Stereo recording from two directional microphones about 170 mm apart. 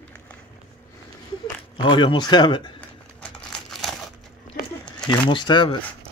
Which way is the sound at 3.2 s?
Centre (ahead or behind).